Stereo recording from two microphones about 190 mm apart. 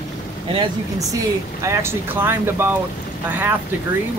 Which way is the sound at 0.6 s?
20° right (ahead or behind).